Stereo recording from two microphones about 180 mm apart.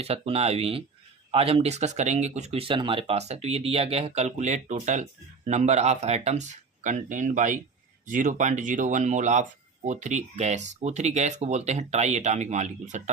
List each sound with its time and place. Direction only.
0.0 s speech: 35° right (ahead or behind)